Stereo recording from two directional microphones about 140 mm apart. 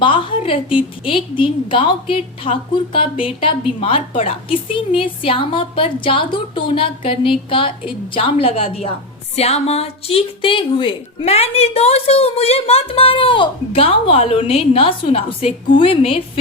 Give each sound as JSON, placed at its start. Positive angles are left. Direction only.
{"t": 0.0, "sound": "a woman's voice", "side_deg": 35}